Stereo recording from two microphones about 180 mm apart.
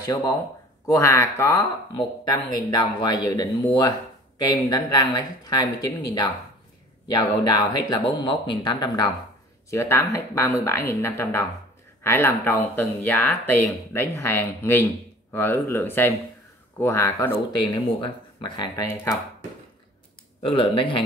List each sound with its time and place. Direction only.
0.0 s speech: 20° left (ahead or behind)
17.6 s speech: 25° left (ahead or behind)
20.4 s speech: 30° left (ahead or behind)